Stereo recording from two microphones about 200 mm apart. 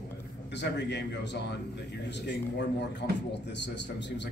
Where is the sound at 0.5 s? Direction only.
60° left (ahead or behind).